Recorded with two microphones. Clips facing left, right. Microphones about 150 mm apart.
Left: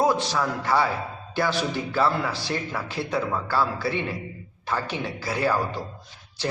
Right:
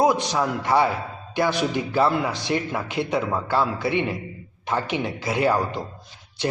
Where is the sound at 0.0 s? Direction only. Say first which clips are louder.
Right 2 dB; 15° right (ahead or behind).